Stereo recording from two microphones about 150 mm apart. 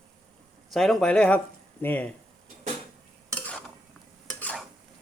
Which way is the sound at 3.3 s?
10° left (ahead or behind).